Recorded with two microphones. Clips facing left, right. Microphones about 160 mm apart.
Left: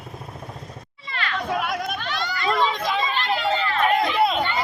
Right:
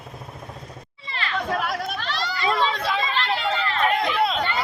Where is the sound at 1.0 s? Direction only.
30° right (ahead or behind).